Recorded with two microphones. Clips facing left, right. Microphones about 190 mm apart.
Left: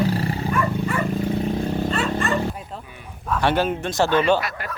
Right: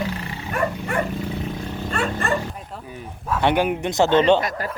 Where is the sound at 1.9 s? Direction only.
55° right (ahead or behind).